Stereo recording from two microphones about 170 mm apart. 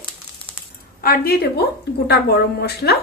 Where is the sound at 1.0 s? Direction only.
65° left (ahead or behind).